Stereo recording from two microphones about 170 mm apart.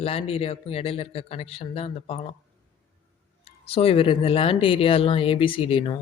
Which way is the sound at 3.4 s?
35° left (ahead or behind).